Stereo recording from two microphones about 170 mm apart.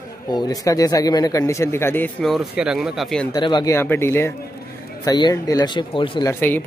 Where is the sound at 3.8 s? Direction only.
15° left (ahead or behind).